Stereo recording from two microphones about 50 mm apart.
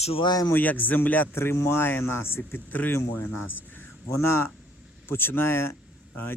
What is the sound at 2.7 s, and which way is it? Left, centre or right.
Speech, left.